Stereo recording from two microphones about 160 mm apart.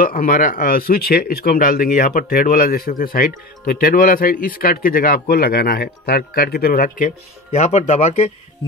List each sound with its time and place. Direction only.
0.0 s speech: 60° left (ahead or behind); by 8.3 s 40° left (ahead or behind)